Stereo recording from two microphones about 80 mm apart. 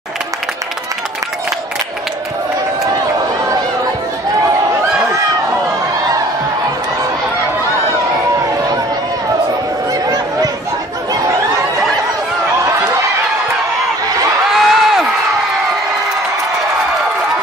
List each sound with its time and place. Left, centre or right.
3.4 s chatter: right
10.0 s a sound: right
14.5 s crowd: centre